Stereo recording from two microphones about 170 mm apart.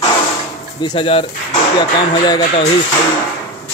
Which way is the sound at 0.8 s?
30° left (ahead or behind).